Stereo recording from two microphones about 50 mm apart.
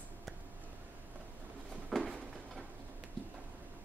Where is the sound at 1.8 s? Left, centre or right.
Centre.